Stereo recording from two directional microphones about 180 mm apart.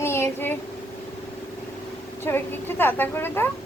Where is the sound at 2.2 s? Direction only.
10° left (ahead or behind).